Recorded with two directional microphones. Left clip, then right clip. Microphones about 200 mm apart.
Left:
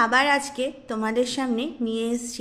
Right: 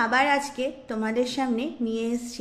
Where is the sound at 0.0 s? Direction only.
15° left (ahead or behind).